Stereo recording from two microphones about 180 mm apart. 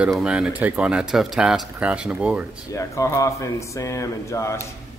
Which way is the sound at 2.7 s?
15° left (ahead or behind).